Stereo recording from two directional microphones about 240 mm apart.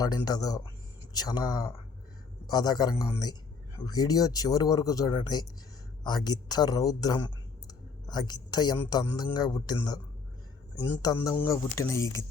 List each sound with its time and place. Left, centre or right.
0.0 s speech: centre
11.0 s speech: centre